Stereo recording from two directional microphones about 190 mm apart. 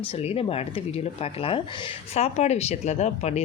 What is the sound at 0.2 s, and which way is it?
Speech, 30° left (ahead or behind).